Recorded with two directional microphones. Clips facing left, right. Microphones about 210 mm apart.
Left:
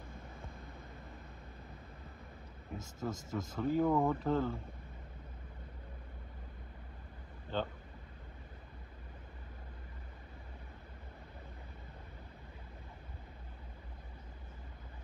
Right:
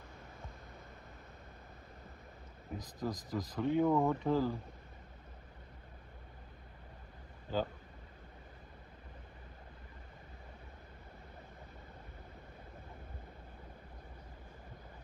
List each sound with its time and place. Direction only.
3.0 s speech: 15° right (ahead or behind)
3.6 s speech: centre (ahead or behind)
7.5 s speech: 5° right (ahead or behind)